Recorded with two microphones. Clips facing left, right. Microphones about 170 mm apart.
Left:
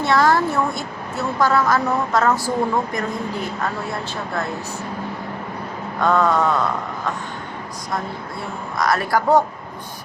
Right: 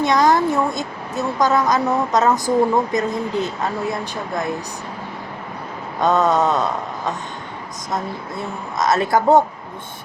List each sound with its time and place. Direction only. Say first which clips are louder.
0.0 s a woman's voice: right 1 dB; 15° right (ahead or behind)
6.0 s a woman's voice: right 1 dB; 20° right (ahead or behind)
8.8 s a woman's voice: right 3 dB; 20° right (ahead or behind)